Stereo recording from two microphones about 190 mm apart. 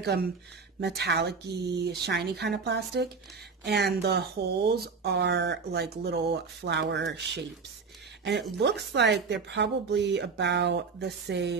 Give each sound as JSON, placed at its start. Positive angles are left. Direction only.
{"t": 0.0, "sound": "speech", "side_deg": -55}
{"t": 8.5, "sound": "speech", "side_deg": -65}